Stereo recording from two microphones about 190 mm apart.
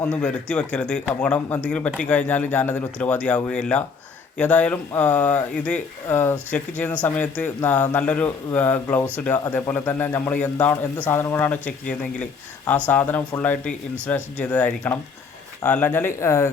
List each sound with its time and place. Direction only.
0.0 s speech: 5° left (ahead or behind)